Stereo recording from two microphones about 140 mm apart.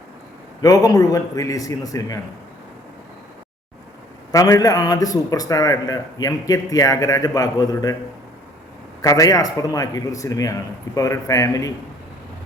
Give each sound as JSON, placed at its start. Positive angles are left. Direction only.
{"t": 0.6, "sound": "a man's voice", "side_deg": 25}
{"t": 4.3, "sound": "a man's voice", "side_deg": 25}
{"t": 9.0, "sound": "a man's voice", "side_deg": 25}